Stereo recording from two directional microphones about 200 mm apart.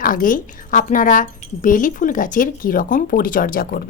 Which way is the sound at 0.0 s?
45° left (ahead or behind).